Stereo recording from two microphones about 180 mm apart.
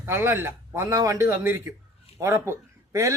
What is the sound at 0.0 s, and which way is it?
A man's voice, 15° right (ahead or behind).